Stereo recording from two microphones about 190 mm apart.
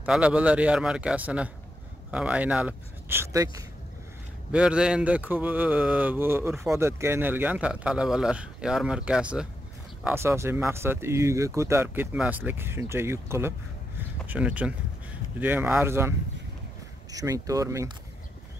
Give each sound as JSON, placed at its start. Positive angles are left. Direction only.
{"t": 0.0, "sound": "speech", "side_deg": -5}